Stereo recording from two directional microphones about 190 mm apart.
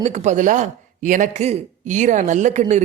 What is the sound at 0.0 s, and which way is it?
Speech, 35° right (ahead or behind).